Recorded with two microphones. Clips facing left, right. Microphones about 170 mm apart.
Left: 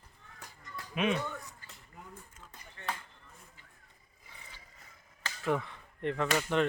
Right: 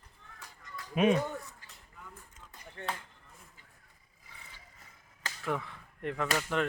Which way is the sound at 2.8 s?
55° right (ahead or behind).